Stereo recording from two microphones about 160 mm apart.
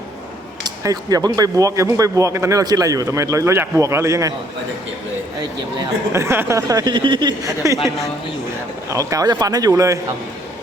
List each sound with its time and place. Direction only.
0.6 s speech: 20° right (ahead or behind)
5.8 s speech: 15° right (ahead or behind)
8.9 s speech: 20° right (ahead or behind)